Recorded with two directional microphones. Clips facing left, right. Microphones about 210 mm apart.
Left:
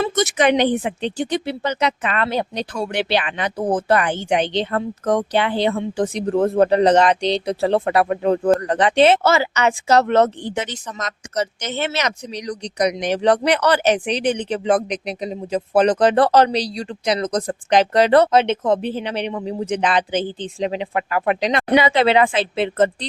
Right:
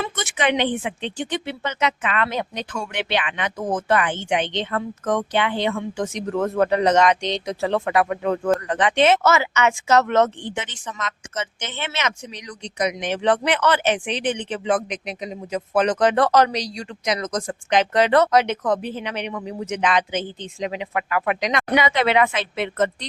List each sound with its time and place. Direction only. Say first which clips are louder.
0.0 s speech: left 6 dB; 40° left (ahead or behind)